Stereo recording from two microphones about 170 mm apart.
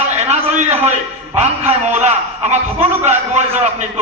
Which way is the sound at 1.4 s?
40° right (ahead or behind).